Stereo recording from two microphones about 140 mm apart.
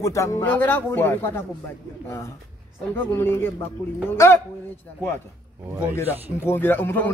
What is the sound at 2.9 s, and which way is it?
Speech, 15° left (ahead or behind).